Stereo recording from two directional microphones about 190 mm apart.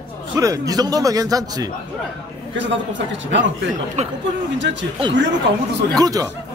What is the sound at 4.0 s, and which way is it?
Speech, 35° right (ahead or behind).